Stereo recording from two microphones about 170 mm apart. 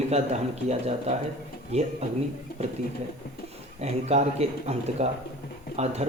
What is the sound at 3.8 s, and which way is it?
Speech, 40° right (ahead or behind).